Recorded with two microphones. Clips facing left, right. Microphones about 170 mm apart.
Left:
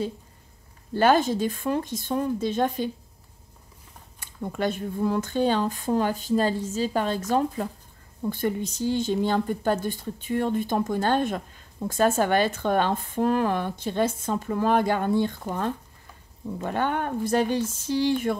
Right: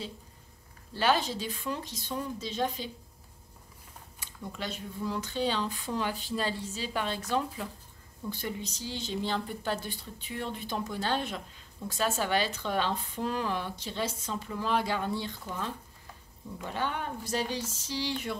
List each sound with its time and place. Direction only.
0.9 s speech: 50° left (ahead or behind)
4.2 s speech: 50° left (ahead or behind)